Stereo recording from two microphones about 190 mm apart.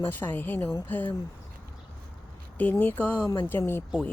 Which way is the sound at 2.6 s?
10° left (ahead or behind).